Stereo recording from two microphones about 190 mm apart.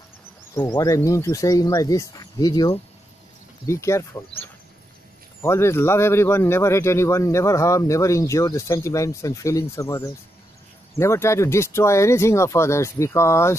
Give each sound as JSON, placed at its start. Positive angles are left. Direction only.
{"t": 0.6, "sound": "speech", "side_deg": 20}
{"t": 5.4, "sound": "speech", "side_deg": 15}